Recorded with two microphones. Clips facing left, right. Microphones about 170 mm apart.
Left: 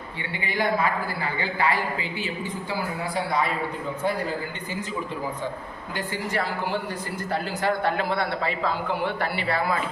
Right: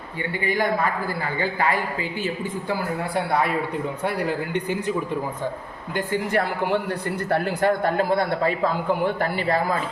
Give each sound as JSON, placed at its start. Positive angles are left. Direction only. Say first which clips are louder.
{"t": 0.4, "sound": "a man's voice", "louder": "right 1 dB", "side_deg": -45}
{"t": 3.2, "sound": "speech", "louder": "right 3 dB", "side_deg": -60}
{"t": 6.3, "sound": "a man's voice", "louder": "right 4 dB", "side_deg": -55}